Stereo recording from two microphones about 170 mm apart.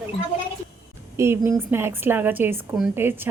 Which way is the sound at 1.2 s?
15° right (ahead or behind).